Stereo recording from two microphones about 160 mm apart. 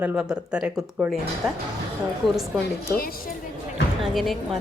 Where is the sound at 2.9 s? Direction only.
65° left (ahead or behind).